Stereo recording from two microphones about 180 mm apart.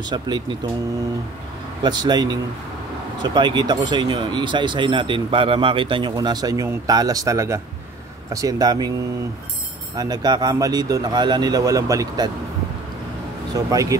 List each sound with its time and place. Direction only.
0.0 s speech: 25° right (ahead or behind)
1.8 s speech: 25° right (ahead or behind)
9.9 s speech: 20° right (ahead or behind)
13.5 s speech: 20° right (ahead or behind)